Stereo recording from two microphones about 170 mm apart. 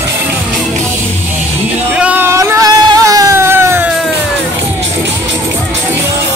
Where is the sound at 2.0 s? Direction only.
10° right (ahead or behind).